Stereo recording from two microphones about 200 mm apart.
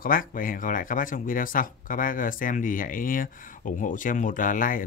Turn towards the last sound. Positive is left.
turn(degrees=40)  # may be behind; listen again after turning